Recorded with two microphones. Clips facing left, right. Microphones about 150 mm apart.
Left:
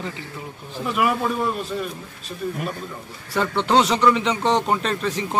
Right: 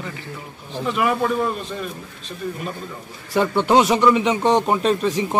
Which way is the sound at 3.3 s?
15° right (ahead or behind).